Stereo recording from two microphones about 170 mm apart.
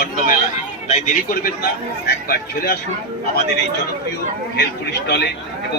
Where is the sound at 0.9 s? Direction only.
55° left (ahead or behind).